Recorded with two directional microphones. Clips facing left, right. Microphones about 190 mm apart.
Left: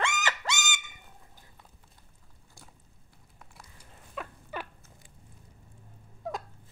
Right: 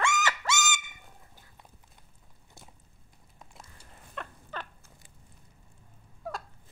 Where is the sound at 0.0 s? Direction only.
20° left (ahead or behind).